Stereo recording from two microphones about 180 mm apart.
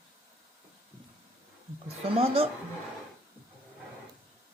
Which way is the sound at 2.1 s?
30° right (ahead or behind).